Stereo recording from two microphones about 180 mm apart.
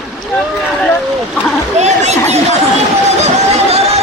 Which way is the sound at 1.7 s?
35° right (ahead or behind).